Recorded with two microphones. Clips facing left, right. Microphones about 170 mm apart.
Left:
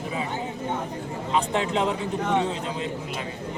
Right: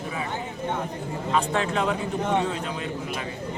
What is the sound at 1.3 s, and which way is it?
Speech, 20° left (ahead or behind).